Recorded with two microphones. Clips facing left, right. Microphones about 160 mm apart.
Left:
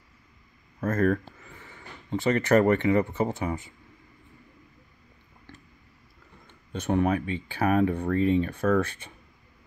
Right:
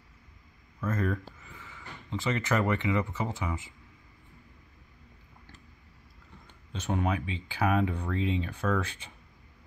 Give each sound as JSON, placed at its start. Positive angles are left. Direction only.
{"t": 0.7, "sound": "a sound", "side_deg": 45}
{"t": 2.2, "sound": "speech", "side_deg": 45}
{"t": 6.7, "sound": "speech", "side_deg": 55}